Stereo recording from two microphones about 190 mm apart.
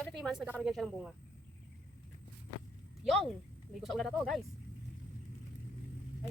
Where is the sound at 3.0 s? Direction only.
5° left (ahead or behind).